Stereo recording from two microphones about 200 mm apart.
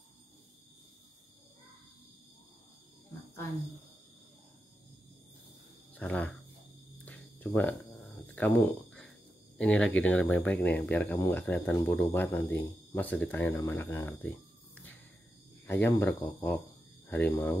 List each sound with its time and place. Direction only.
5.9 s speech: 5° left (ahead or behind)
7.1 s a sound: 10° left (ahead or behind)
9.6 s speech: 5° left (ahead or behind)
15.6 s speech: 10° left (ahead or behind)